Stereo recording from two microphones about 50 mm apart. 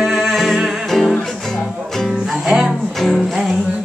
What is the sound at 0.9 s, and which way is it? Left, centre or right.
Music, centre.